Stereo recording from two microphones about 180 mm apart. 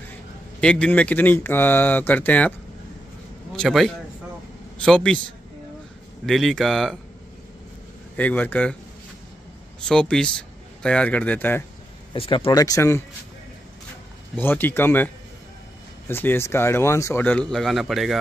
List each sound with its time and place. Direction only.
0.6 s speech: 5° left (ahead or behind)
3.5 s speech: centre (ahead or behind)
6.2 s speech: centre (ahead or behind)
8.2 s speech: 10° left (ahead or behind)
9.8 s speech: 5° left (ahead or behind)
12.1 s speech: 30° left (ahead or behind)
14.3 s speech: 10° left (ahead or behind)
16.1 s speech: 10° left (ahead or behind)